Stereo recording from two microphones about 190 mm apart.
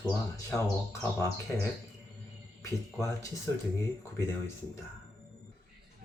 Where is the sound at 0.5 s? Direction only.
15° left (ahead or behind).